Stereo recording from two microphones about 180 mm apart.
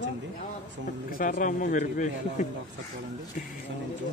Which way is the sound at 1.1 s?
45° left (ahead or behind).